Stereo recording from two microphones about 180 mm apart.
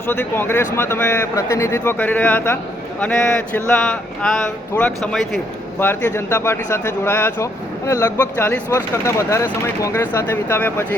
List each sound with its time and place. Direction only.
0.1 s speech: 10° left (ahead or behind)